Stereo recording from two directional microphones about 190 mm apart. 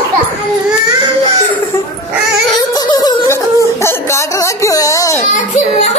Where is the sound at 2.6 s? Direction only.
20° left (ahead or behind).